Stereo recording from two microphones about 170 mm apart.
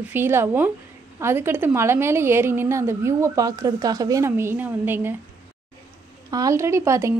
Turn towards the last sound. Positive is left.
turn(degrees=-15)  # may be behind; listen again after turning